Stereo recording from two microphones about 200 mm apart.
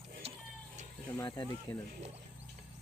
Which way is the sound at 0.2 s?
30° right (ahead or behind).